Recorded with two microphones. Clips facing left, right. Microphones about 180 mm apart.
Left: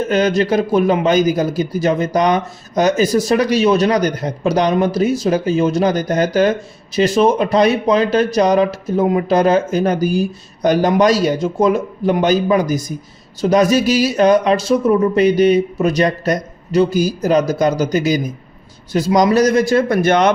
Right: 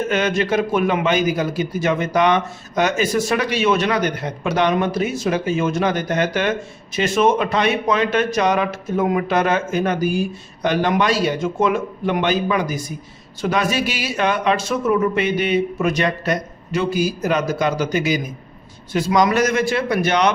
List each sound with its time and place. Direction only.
0.1 s speech: 35° left (ahead or behind)